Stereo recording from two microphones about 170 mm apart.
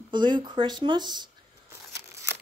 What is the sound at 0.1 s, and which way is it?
Speech, 25° right (ahead or behind).